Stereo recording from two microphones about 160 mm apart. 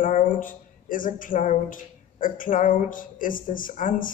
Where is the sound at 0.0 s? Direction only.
55° left (ahead or behind).